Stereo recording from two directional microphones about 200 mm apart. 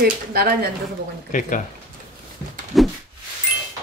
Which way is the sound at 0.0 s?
50° right (ahead or behind).